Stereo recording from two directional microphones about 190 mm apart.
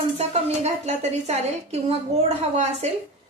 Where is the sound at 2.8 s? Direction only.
35° right (ahead or behind).